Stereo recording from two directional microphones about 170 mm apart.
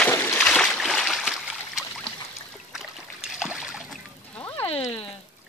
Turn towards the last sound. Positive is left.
turn(degrees=35)  # may be behind; listen again after turning